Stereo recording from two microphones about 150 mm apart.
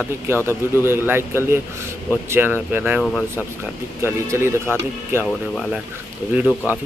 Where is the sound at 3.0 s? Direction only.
5° left (ahead or behind).